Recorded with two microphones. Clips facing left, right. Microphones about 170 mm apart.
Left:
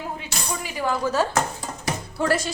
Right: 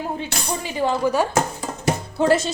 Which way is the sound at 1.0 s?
15° right (ahead or behind).